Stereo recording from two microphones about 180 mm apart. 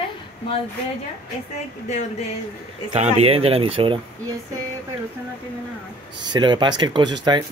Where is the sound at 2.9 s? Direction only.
35° right (ahead or behind).